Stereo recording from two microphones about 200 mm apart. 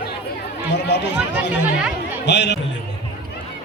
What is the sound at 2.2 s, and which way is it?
Speech, 60° left (ahead or behind).